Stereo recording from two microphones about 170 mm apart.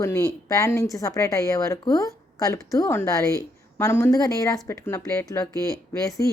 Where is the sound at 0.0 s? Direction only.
15° left (ahead or behind).